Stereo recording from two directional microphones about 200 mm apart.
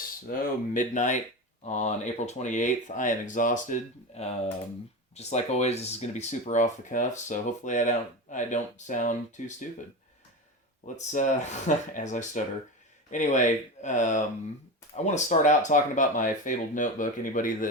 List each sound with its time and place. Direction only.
0.3 s speech: 40° left (ahead or behind)
10.8 s speech: 40° left (ahead or behind)